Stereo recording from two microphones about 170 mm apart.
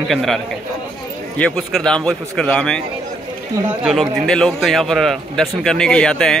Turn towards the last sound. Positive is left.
turn(degrees=5)  # may be behind; listen again after turning